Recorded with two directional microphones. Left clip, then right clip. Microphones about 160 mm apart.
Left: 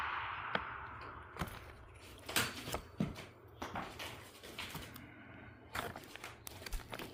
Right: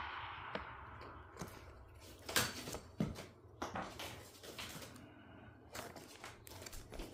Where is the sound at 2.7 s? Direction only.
50° left (ahead or behind).